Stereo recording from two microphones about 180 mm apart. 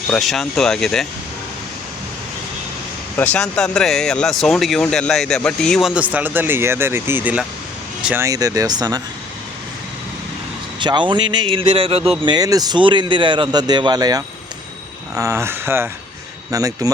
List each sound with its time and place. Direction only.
0.1 s speech: centre (ahead or behind)
3.2 s a man's voice: 5° left (ahead or behind); by 9.0 s 20° right (ahead or behind)
10.8 s a man's voice: 25° right (ahead or behind)